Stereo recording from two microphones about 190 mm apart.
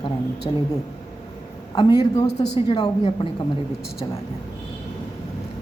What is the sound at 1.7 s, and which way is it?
A woman's voice, 20° left (ahead or behind).